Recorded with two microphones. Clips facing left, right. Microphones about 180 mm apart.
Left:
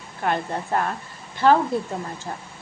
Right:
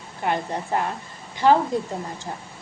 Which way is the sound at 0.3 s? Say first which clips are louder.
Even; 15° right (ahead or behind).